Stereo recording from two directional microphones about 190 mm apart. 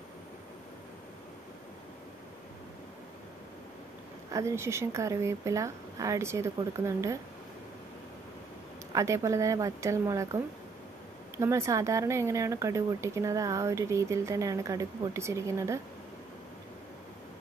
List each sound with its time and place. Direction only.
4.3 s speech: 15° right (ahead or behind)
8.9 s speech: 15° right (ahead or behind)